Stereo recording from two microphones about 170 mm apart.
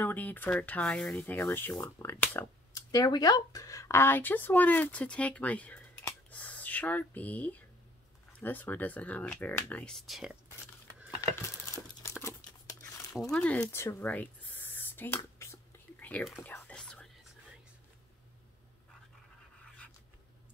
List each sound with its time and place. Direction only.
0.0 s speech: 10° left (ahead or behind)
11.1 s a sound: 20° left (ahead or behind)
12.2 s crumpling: 15° left (ahead or behind)
13.1 s spray: 5° left (ahead or behind)
16.4 s whispering: 10° left (ahead or behind)